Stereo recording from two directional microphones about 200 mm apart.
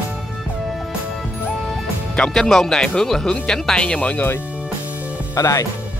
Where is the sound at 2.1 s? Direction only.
5° left (ahead or behind).